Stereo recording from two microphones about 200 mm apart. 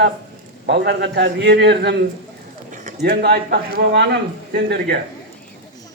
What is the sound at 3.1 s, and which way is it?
A man's voice, 55° right (ahead or behind).